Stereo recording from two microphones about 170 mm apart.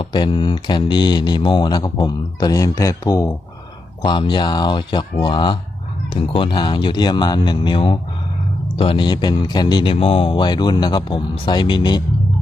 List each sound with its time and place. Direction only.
0.0 s speech: 25° left (ahead or behind)